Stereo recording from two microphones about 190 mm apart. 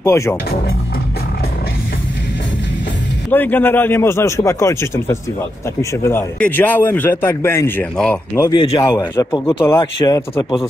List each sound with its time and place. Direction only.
0.0 s a man's voice: 15° left (ahead or behind)
3.3 s a man's voice: 10° left (ahead or behind)
8.4 s speech: 25° left (ahead or behind)